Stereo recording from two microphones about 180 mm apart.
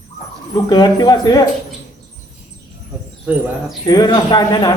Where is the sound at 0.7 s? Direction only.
20° left (ahead or behind).